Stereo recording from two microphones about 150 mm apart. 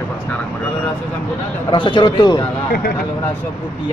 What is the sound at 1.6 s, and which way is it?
Speech, 30° left (ahead or behind).